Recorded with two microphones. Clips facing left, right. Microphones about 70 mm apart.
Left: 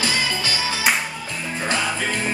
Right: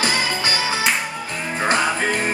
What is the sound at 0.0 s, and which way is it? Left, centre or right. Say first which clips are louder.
Music: right 2 dB; right.